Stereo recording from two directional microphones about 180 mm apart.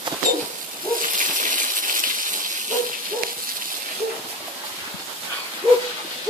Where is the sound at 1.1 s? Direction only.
45° right (ahead or behind).